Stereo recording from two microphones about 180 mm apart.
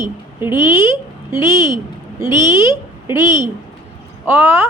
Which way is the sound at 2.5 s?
15° right (ahead or behind).